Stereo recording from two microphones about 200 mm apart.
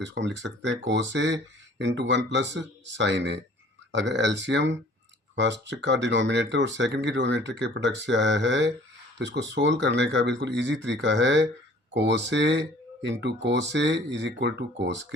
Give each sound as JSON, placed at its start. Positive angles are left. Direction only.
{"t": 0.0, "sound": "speech", "side_deg": -60}